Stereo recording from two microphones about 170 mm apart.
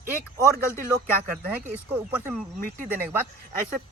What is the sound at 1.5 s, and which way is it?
Speech, 10° right (ahead or behind).